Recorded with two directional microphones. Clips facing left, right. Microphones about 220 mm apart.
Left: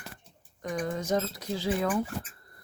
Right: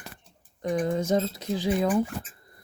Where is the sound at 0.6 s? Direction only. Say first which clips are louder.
Right 6 dB; 30° right (ahead or behind).